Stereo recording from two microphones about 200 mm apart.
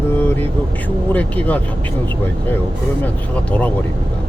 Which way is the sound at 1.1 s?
10° left (ahead or behind).